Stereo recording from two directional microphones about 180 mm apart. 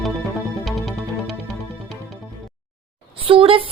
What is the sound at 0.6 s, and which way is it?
Music, centre (ahead or behind).